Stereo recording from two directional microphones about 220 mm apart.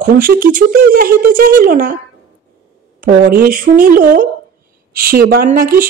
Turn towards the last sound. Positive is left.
turn(degrees=-40)  # may be behind; listen again after turning